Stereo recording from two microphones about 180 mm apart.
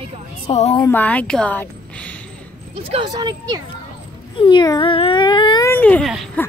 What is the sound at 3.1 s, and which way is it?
Speech, 20° right (ahead or behind).